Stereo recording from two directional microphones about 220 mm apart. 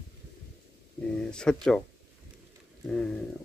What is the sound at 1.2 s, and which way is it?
Speech, 5° left (ahead or behind).